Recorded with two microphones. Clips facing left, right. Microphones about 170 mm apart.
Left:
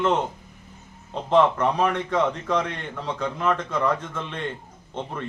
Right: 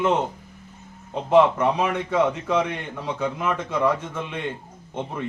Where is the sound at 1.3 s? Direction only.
10° right (ahead or behind).